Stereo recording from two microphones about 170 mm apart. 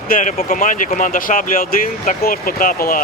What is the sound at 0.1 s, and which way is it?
Speech, 50° left (ahead or behind).